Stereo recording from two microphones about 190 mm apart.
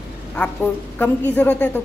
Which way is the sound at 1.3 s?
5° left (ahead or behind).